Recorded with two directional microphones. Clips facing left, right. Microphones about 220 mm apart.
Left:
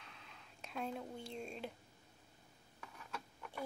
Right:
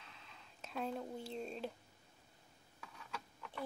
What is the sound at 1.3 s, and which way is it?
Speech, 35° right (ahead or behind).